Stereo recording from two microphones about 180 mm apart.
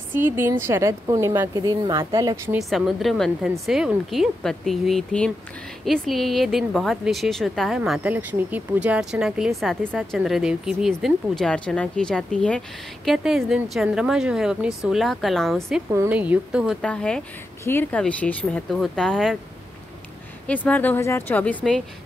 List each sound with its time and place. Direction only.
0.1 s a woman's voice: 10° right (ahead or behind)
2.7 s a woman's voice: centre (ahead or behind)
15.9 s a woman's voice: 10° right (ahead or behind)
16.8 s a woman's voice: 5° left (ahead or behind)
20.4 s speech: 10° left (ahead or behind)